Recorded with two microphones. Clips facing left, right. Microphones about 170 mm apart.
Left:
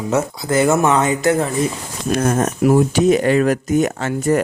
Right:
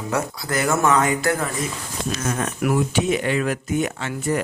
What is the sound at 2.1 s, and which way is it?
Speech, 50° left (ahead or behind).